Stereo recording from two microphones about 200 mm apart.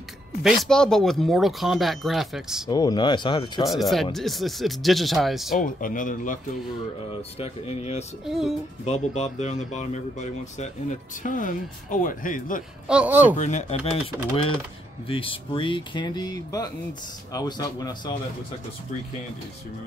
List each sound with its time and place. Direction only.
0.4 s speech: centre (ahead or behind)
2.7 s speech: 20° left (ahead or behind)
3.6 s speech: centre (ahead or behind)
5.6 s speech: 40° left (ahead or behind)
7.3 s speech: 30° left (ahead or behind)
8.3 s speech: centre (ahead or behind)
8.8 s speech: 35° left (ahead or behind)
12.8 s speech: 5° right (ahead or behind)
13.4 s speech: 35° left (ahead or behind)
15.0 s speech: 25° left (ahead or behind)